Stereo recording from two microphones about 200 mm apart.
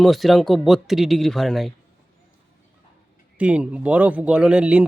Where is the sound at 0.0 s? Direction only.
Centre (ahead or behind).